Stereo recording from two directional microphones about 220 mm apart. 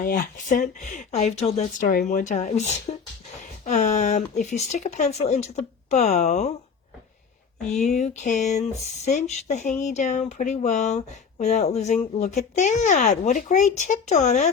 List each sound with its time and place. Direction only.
0.0 s speech: 40° left (ahead or behind)
7.9 s speech: 30° left (ahead or behind)